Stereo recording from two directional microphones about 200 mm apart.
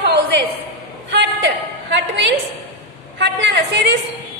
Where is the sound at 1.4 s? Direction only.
60° right (ahead or behind).